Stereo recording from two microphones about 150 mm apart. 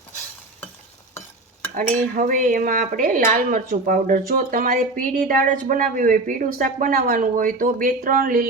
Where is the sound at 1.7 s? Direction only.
60° right (ahead or behind).